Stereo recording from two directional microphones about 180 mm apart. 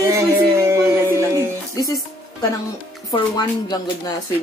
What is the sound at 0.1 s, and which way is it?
Music, 15° right (ahead or behind).